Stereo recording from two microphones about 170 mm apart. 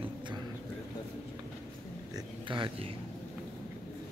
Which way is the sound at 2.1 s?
30° right (ahead or behind).